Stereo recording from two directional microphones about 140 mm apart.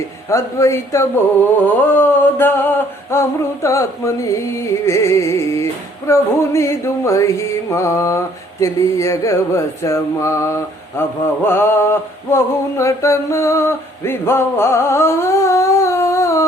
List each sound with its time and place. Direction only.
0.3 s speech: 20° left (ahead or behind)